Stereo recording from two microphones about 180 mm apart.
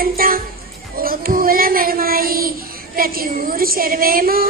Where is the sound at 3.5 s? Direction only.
55° right (ahead or behind).